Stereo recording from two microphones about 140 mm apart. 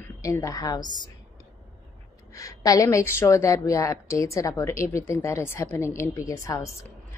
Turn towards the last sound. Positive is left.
turn(degrees=20)  # may be behind; listen again after turning